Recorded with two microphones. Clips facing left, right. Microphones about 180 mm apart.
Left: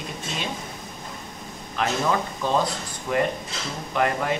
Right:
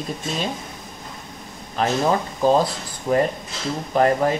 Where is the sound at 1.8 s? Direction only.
35° right (ahead or behind).